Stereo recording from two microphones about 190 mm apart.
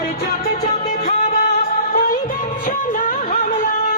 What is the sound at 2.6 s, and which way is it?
Music, 45° left (ahead or behind).